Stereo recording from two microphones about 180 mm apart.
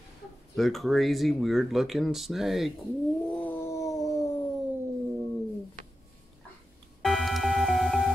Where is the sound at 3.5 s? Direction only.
15° left (ahead or behind).